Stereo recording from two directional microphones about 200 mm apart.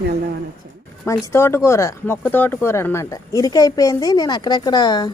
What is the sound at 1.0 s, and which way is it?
A woman's voice, 15° left (ahead or behind).